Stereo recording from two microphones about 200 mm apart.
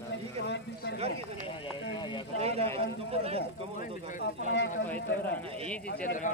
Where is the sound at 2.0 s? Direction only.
25° left (ahead or behind).